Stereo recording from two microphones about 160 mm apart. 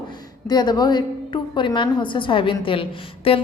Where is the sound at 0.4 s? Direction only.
25° left (ahead or behind).